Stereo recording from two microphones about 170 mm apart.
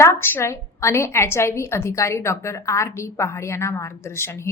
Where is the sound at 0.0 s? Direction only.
15° left (ahead or behind).